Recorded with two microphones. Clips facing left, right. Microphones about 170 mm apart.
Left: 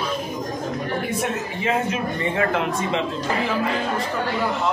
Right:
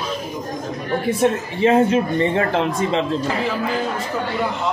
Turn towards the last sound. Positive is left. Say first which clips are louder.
# right 3 dB
turn(degrees=-35)  # may be behind; listen again after turning